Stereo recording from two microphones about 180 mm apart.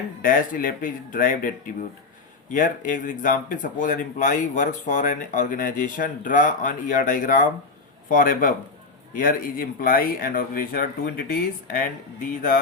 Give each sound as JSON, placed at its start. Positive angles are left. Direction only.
{"t": 0.2, "sound": "speech", "side_deg": 50}